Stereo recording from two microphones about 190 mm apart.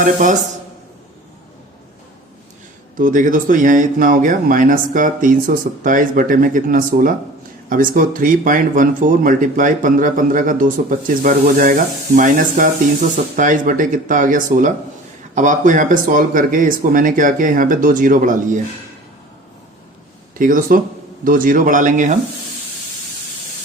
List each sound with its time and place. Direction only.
0.0 s speech: 45° right (ahead or behind)
2.9 s speech: 45° right (ahead or behind)
20.4 s speech: 45° right (ahead or behind)